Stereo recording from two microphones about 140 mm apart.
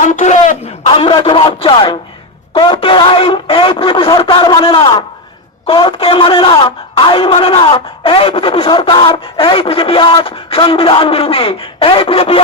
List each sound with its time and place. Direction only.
0.0 s speech: 60° left (ahead or behind)
0.9 s speech: 40° left (ahead or behind)